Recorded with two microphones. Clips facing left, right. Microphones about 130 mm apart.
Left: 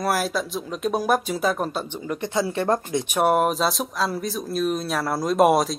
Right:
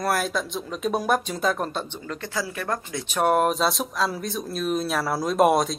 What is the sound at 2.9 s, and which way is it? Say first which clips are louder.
Speech: left 5 dB; 15° left (ahead or behind).